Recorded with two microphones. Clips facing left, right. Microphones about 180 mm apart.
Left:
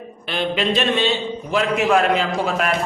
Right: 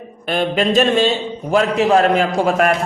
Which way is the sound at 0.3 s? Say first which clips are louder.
Right 4 dB; 45° right (ahead or behind).